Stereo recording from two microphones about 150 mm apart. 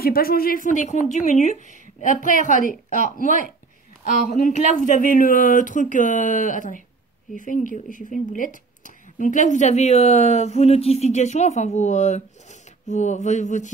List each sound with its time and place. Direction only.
0.0 s speech: 85° left; by 13.7 s 55° left (ahead or behind)